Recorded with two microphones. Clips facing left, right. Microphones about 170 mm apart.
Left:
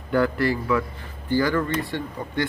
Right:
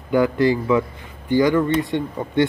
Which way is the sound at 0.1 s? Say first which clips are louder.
Right 4 dB; 15° right (ahead or behind).